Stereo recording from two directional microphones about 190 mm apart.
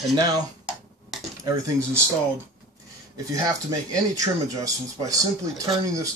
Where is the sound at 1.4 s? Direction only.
15° right (ahead or behind).